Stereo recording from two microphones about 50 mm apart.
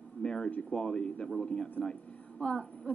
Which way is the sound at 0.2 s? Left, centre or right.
Centre.